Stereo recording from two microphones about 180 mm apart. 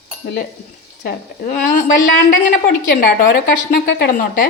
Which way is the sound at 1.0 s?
60° left (ahead or behind).